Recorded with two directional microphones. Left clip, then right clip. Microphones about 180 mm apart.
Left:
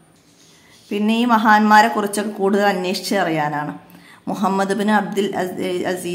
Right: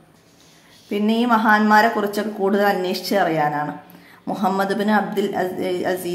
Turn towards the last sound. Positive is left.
turn(degrees=10)  # may be behind; listen again after turning